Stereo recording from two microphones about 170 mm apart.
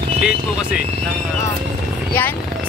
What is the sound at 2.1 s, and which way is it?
Speech, 10° left (ahead or behind).